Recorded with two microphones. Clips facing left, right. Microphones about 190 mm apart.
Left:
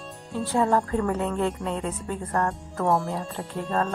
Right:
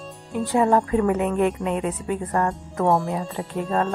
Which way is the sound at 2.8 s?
Centre (ahead or behind).